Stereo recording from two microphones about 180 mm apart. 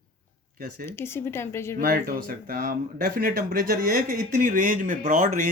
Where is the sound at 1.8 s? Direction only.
55° right (ahead or behind).